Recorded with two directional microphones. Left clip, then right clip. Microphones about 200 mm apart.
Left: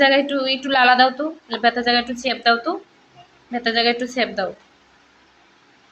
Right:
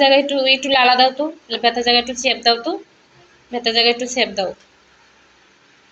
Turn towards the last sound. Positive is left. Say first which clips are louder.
# right 3 dB
turn(degrees=10)  # may be behind; listen again after turning